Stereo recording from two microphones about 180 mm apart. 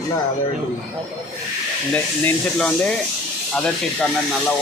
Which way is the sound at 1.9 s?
5° left (ahead or behind).